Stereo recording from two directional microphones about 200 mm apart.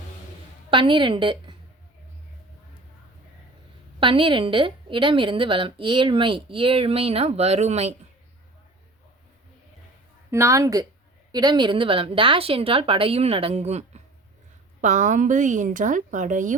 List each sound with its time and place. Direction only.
0.7 s a woman's voice: 25° right (ahead or behind)
4.0 s a woman's voice: 25° right (ahead or behind)
10.3 s a woman's voice: 15° right (ahead or behind); by 16.6 s 40° right (ahead or behind)